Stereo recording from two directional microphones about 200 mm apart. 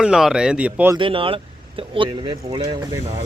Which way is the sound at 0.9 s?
25° right (ahead or behind).